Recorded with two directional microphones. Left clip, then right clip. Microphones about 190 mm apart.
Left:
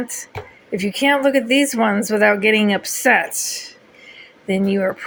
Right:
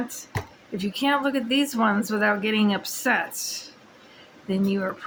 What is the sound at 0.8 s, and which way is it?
Speech, 20° left (ahead or behind).